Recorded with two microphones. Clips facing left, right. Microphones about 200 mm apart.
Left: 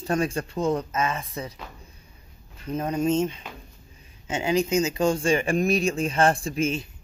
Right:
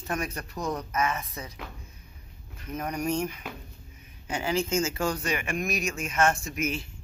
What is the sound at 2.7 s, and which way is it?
Speech, 25° left (ahead or behind).